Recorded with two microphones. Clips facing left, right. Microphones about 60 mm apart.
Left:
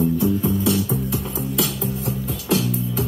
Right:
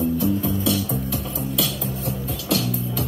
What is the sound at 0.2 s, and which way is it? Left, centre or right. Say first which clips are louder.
Music: left 2 dB; left.